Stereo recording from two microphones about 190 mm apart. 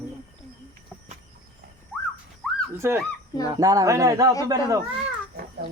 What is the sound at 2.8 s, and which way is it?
Speech, 15° right (ahead or behind).